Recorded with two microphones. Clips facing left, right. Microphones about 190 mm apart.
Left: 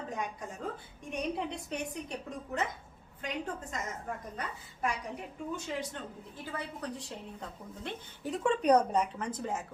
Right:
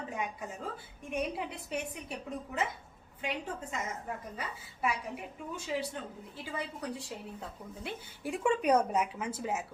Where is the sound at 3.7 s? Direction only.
10° right (ahead or behind).